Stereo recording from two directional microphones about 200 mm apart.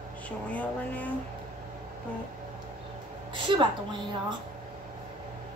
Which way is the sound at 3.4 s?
25° right (ahead or behind).